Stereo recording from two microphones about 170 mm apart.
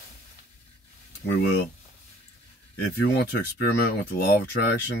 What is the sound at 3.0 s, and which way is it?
Speech, 70° left (ahead or behind).